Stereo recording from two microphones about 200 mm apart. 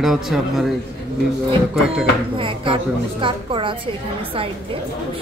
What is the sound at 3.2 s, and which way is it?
Speech, 25° right (ahead or behind).